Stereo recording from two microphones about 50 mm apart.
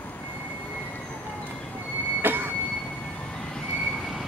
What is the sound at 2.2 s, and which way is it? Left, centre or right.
Train, right.